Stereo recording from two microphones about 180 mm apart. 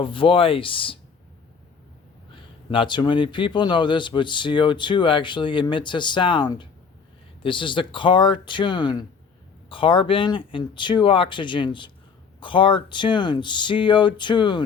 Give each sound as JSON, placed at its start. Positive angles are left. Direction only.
{"t": 0.0, "sound": "speech", "side_deg": 30}
{"t": 2.3, "sound": "speech", "side_deg": 25}